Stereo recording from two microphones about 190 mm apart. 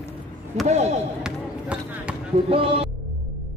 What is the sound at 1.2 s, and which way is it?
Basketball bounce, 5° right (ahead or behind).